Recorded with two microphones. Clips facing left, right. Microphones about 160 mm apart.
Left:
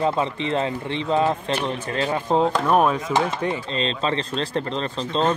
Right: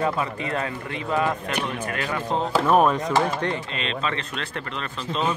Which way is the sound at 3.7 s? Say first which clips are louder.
Left 4 dB; 30° left (ahead or behind).